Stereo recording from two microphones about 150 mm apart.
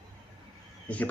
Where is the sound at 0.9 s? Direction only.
10° left (ahead or behind).